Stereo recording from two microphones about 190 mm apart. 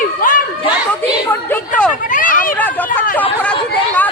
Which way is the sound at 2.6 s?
10° left (ahead or behind).